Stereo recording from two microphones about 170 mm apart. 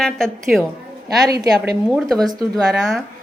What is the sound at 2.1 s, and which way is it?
Speech, 25° right (ahead or behind).